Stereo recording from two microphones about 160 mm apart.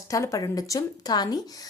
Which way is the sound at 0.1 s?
20° left (ahead or behind).